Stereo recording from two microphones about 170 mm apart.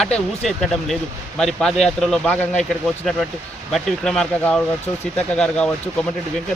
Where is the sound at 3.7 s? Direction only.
Centre (ahead or behind).